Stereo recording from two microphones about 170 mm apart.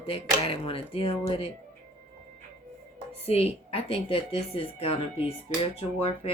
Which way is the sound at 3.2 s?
35° left (ahead or behind).